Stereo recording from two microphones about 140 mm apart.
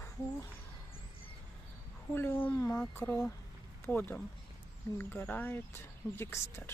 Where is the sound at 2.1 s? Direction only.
15° left (ahead or behind).